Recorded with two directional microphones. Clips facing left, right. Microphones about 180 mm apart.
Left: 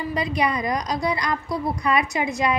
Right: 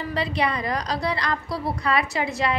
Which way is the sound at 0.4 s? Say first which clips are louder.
Left 2 dB; 15° left (ahead or behind).